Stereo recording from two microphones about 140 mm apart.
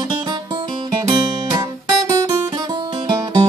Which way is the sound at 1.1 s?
30° right (ahead or behind).